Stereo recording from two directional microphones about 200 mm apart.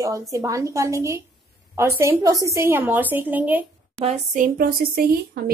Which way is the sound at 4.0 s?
35° right (ahead or behind).